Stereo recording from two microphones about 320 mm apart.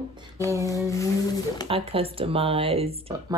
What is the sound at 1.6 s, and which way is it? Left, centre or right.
Speech, centre.